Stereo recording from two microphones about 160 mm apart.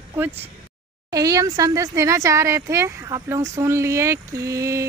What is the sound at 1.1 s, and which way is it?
Speech, 20° right (ahead or behind).